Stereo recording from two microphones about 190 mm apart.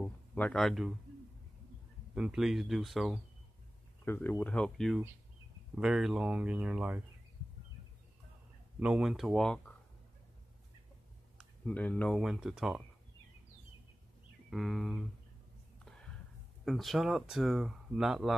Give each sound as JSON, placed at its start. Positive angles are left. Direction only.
{"t": 0.0, "sound": "speech", "side_deg": 5}
{"t": 2.1, "sound": "speech", "side_deg": -5}
{"t": 4.0, "sound": "speech", "side_deg": 10}
{"t": 8.7, "sound": "speech", "side_deg": -5}
{"t": 11.3, "sound": "speech", "side_deg": 5}
{"t": 14.5, "sound": "speech", "side_deg": 0}
{"t": 16.6, "sound": "speech", "side_deg": 0}